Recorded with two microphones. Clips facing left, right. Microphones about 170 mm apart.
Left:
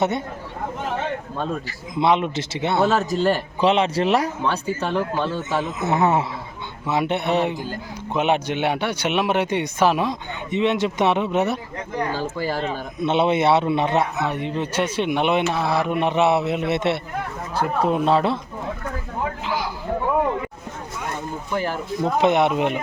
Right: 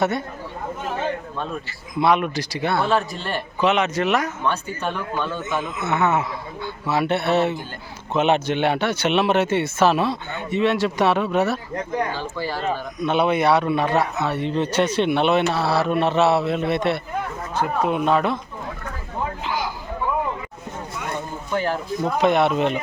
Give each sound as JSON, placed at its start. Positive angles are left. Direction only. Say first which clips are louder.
{"t": 2.0, "sound": "speech", "louder": "even", "side_deg": 20}
{"t": 2.8, "sound": "a man's voice", "louder": "left 4 dB", "side_deg": 40}
{"t": 6.8, "sound": "speech", "louder": "right 1 dB", "side_deg": 20}
{"t": 12.1, "sound": "speech", "louder": "left 3 dB", "side_deg": 45}
{"t": 13.0, "sound": "speech", "louder": "left 1 dB", "side_deg": 25}
{"t": 17.8, "sound": "a man's voice", "louder": "left 2 dB", "side_deg": 35}
{"t": 22.0, "sound": "speech", "louder": "left 1 dB", "side_deg": 20}